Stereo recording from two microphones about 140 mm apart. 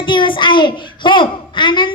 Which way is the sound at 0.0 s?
35° left (ahead or behind).